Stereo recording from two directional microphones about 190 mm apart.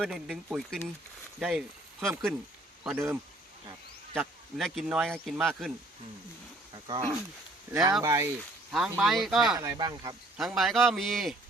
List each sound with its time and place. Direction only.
0.0 s speech: 5° right (ahead or behind)
7.7 s speech: 15° right (ahead or behind)
8.7 s speech: centre (ahead or behind)
9.6 s speech: 20° right (ahead or behind)
10.3 s speech: centre (ahead or behind)